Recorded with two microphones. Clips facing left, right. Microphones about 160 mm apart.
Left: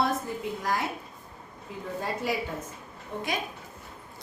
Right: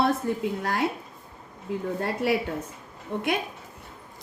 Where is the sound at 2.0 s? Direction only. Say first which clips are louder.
Right 3 dB; 65° right (ahead or behind).